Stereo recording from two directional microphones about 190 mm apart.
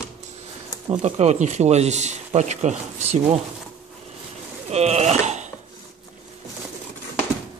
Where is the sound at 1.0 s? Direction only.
35° right (ahead or behind).